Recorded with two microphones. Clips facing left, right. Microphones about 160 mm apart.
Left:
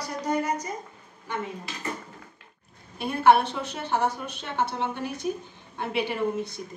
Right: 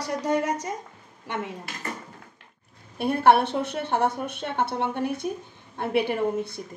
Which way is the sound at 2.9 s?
60° right (ahead or behind).